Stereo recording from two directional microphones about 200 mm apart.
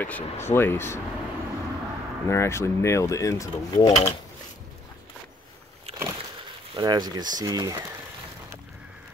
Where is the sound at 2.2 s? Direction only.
15° left (ahead or behind).